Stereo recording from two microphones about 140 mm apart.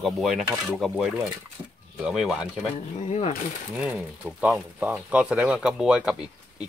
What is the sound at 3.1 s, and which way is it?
Speech, 50° left (ahead or behind).